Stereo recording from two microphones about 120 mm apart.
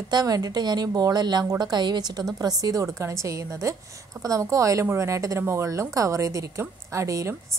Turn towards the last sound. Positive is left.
turn(degrees=-25)  # may be behind; listen again after turning